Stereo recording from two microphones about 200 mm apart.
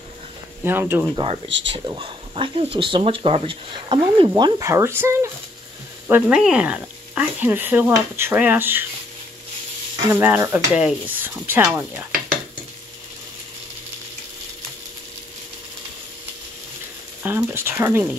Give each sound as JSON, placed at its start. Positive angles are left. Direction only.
{"t": 0.7, "sound": "speech", "side_deg": -10}
{"t": 1.1, "sound": "speech", "side_deg": -30}
{"t": 1.5, "sound": "speech", "side_deg": -65}
{"t": 1.9, "sound": "speech", "side_deg": -25}
{"t": 10.1, "sound": "speech", "side_deg": -10}
{"t": 17.2, "sound": "speech", "side_deg": -10}